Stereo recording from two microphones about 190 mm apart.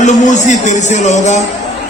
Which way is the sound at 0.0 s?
40° left (ahead or behind).